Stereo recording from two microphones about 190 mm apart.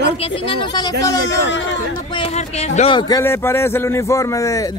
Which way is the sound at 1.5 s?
75° left (ahead or behind).